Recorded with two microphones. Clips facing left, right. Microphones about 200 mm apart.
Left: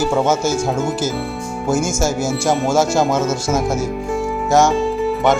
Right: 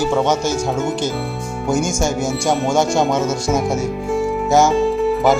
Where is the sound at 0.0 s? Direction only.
5° left (ahead or behind).